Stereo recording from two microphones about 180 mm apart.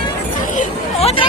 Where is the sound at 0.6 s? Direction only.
35° left (ahead or behind).